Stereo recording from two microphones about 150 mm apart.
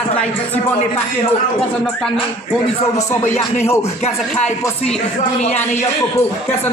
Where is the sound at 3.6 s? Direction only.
15° left (ahead or behind).